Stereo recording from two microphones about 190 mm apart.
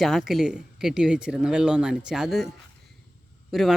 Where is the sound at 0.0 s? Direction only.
Centre (ahead or behind).